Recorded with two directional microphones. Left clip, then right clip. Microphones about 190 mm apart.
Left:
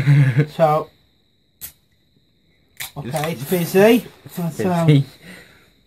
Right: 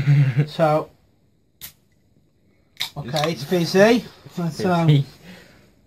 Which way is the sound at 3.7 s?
5° right (ahead or behind).